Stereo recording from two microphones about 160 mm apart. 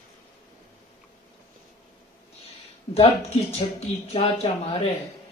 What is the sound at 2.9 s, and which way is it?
Speech, 40° left (ahead or behind).